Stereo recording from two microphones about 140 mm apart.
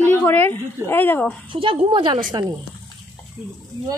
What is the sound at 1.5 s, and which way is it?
Speech, 40° right (ahead or behind).